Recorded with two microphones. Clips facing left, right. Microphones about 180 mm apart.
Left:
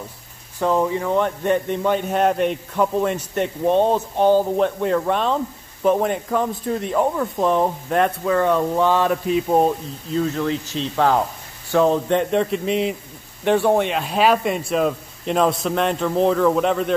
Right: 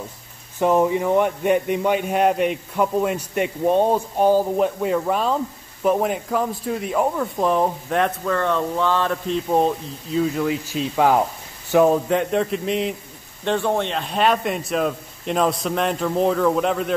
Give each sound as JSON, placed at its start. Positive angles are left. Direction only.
{"t": 0.6, "sound": "a man's voice", "side_deg": -15}
{"t": 10.1, "sound": "a man's voice", "side_deg": -10}
{"t": 13.4, "sound": "a man's voice", "side_deg": 10}